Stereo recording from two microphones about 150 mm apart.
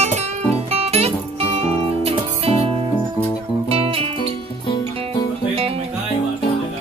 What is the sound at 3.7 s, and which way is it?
Music, 40° right (ahead or behind).